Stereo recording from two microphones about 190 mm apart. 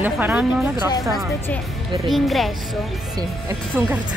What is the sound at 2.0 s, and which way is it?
Speech, centre (ahead or behind).